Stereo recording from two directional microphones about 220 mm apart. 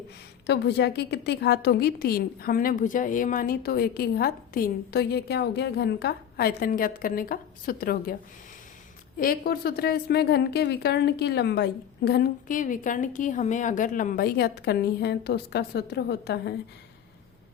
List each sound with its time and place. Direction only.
0.4 s a woman's voice: 50° left (ahead or behind)
9.1 s a woman's voice: 40° left (ahead or behind)